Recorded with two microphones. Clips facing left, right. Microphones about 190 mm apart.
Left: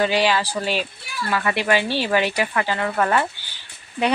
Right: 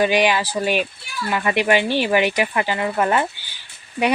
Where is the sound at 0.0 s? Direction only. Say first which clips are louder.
Right 2 dB; 15° right (ahead or behind).